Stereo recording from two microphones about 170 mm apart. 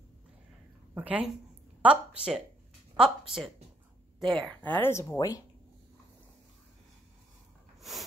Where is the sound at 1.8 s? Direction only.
5° right (ahead or behind).